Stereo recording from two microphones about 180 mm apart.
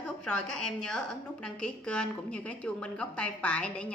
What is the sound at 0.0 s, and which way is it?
A woman's voice, 5° left (ahead or behind).